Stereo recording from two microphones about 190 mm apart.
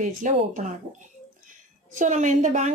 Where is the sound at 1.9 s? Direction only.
40° right (ahead or behind).